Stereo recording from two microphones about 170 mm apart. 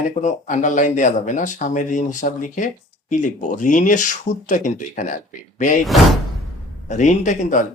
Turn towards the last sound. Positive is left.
turn(degrees=45)  # may be behind; listen again after turning